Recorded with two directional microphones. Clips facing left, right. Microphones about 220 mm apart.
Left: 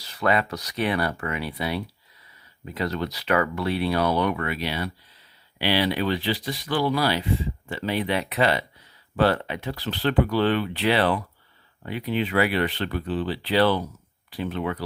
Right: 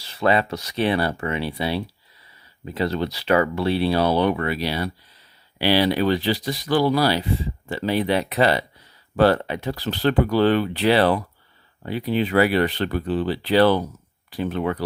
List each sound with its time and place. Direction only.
0.0 s speech: 25° right (ahead or behind); by 14.8 s 45° right (ahead or behind)